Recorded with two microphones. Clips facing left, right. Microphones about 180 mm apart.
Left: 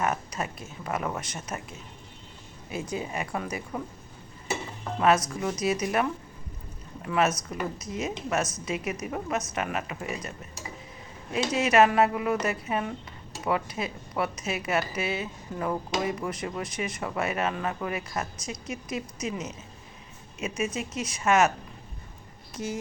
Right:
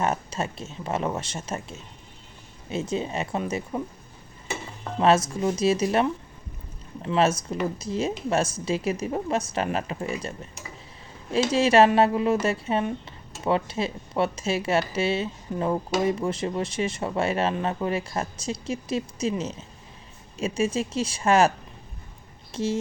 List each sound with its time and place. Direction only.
0.0 s speech: 25° right (ahead or behind)
4.9 s speech: 25° right (ahead or behind)
22.5 s speech: 25° right (ahead or behind)